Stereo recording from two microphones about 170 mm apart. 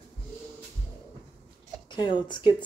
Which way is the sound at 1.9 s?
25° left (ahead or behind).